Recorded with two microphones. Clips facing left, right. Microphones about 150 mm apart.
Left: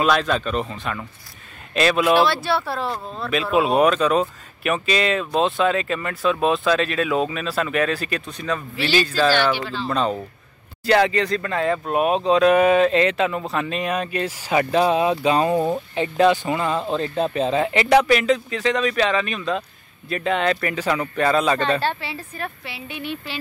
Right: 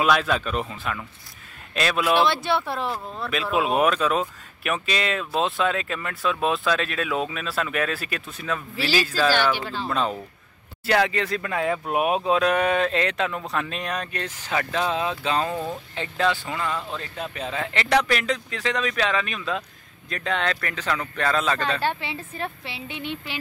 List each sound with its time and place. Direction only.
0.0 s speech: 5° right (ahead or behind)
2.2 s speech: 20° right (ahead or behind)
3.5 s speech: centre (ahead or behind); by 17.8 s 20° left (ahead or behind)
17.8 s speech: 5° left (ahead or behind)
21.8 s speech: 20° right (ahead or behind)